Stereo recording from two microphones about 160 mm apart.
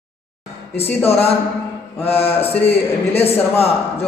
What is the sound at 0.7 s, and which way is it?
A man's voice, 40° left (ahead or behind).